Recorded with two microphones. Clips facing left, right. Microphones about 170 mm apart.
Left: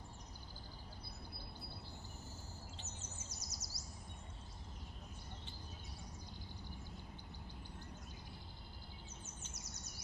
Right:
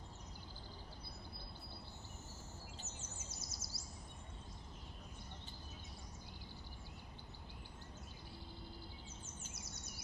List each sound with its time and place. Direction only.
3.3 s bird vocalization: 25° right (ahead or behind)